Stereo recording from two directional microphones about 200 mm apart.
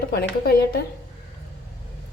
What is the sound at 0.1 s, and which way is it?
Speech, 50° left (ahead or behind).